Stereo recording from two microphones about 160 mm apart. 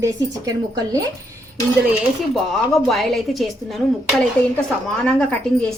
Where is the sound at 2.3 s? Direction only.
Centre (ahead or behind).